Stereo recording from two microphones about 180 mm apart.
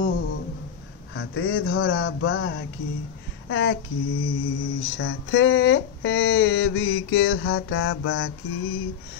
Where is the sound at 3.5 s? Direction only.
85° left.